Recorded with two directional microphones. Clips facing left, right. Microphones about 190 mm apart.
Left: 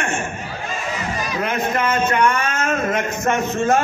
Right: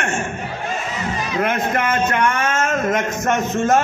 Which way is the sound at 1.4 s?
50° right (ahead or behind).